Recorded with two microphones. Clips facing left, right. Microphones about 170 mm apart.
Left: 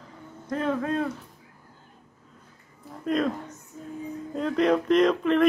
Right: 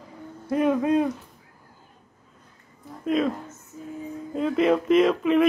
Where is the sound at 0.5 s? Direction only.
15° right (ahead or behind).